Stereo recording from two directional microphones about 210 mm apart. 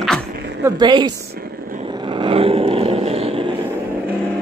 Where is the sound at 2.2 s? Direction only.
25° right (ahead or behind).